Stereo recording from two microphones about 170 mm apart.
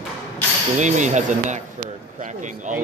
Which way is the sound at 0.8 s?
45° right (ahead or behind).